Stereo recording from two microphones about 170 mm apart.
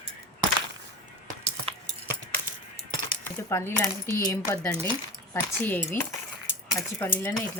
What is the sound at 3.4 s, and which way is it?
Speech, 15° left (ahead or behind).